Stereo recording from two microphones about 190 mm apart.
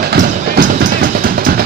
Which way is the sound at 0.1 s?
45° right (ahead or behind).